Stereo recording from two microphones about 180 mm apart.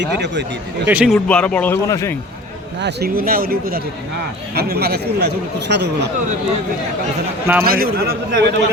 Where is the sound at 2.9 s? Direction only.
55° right (ahead or behind).